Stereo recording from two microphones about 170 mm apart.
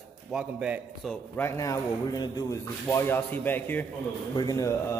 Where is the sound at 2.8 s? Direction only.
15° left (ahead or behind).